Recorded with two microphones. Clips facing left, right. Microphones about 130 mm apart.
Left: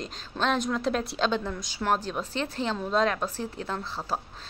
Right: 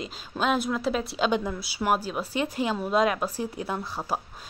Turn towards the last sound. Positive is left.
turn(degrees=-10)  # may be behind; listen again after turning